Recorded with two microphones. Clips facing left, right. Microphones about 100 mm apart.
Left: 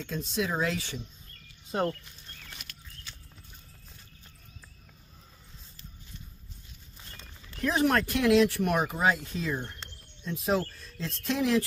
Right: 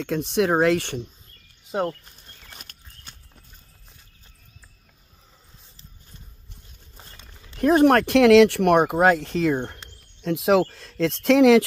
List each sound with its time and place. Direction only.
0.0 s speech: 70° right (ahead or behind)
1.7 s speech: 20° right (ahead or behind)
2.0 s horse: 40° right (ahead or behind)
7.6 s speech: 50° right (ahead or behind); by 9.6 s 70° right (ahead or behind)
10.2 s speech: 85° right